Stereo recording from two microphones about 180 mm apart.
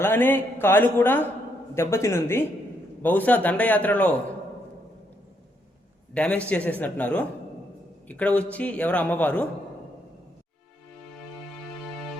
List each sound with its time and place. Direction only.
0.0 s a man's voice: 10° left (ahead or behind)
6.1 s a man's voice: 5° left (ahead or behind)